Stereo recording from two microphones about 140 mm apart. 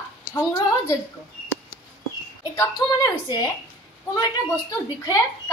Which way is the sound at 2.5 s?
30° left (ahead or behind).